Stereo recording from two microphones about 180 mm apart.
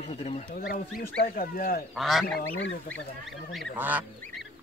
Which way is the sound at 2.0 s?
Centre (ahead or behind).